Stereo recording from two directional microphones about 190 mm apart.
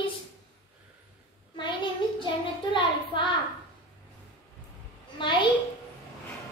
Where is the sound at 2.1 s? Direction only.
25° left (ahead or behind).